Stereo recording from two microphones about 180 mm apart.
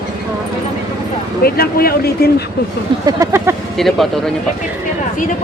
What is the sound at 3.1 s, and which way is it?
Speech, 15° right (ahead or behind).